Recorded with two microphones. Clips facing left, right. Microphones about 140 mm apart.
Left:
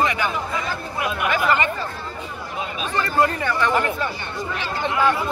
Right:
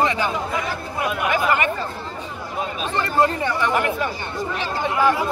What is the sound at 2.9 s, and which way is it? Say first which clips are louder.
Speech: right 1 dB; 25° right (ahead or behind).